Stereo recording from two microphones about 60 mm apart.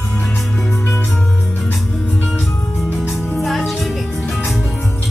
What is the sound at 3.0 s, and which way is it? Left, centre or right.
Music, centre.